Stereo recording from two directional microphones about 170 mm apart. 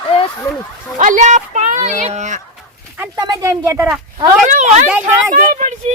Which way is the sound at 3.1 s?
25° right (ahead or behind).